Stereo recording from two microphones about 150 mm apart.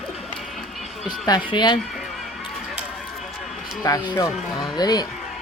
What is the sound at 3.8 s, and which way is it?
Speech, 25° left (ahead or behind).